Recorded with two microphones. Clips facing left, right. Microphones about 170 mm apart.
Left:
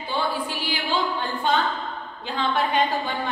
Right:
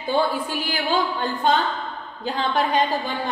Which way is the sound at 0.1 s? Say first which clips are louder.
Right 4 dB; 45° right (ahead or behind).